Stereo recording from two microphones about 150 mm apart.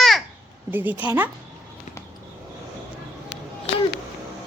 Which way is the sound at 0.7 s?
10° right (ahead or behind).